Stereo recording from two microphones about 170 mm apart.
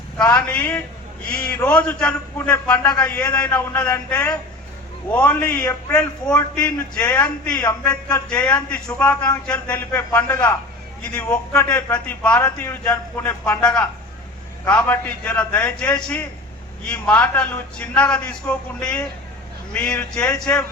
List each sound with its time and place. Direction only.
0.2 s a man's voice: 10° left (ahead or behind)
10.2 s a man's voice: 20° left (ahead or behind)
11.0 s a man's voice: 5° left (ahead or behind)